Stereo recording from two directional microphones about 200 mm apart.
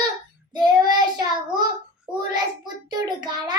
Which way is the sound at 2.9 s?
20° right (ahead or behind).